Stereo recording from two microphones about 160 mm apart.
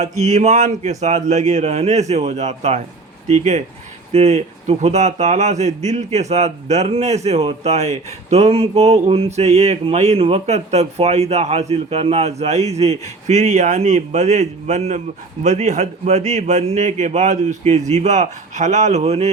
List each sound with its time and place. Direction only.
0.0 s speech: 45° right (ahead or behind)